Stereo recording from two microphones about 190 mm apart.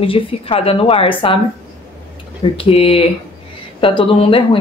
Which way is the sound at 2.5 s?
30° left (ahead or behind).